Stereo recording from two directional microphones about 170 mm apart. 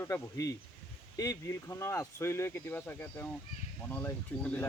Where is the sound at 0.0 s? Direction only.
20° left (ahead or behind).